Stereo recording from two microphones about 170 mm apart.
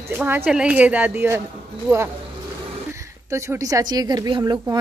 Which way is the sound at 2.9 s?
15° right (ahead or behind).